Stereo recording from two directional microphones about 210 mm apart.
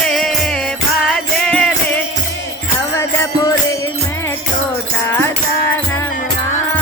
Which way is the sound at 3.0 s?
15° left (ahead or behind).